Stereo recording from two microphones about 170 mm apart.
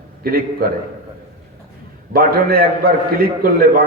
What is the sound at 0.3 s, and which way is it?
Speech, 60° right (ahead or behind).